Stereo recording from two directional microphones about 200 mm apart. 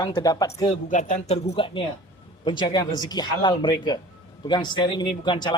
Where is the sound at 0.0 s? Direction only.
20° left (ahead or behind).